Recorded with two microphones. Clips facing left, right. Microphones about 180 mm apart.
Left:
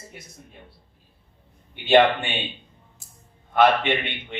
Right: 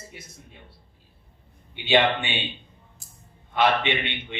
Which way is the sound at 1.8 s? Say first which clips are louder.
Left 4 dB; 50° left (ahead or behind).